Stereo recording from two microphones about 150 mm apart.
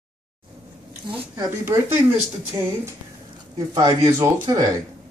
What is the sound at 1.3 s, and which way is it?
Speech, 15° right (ahead or behind).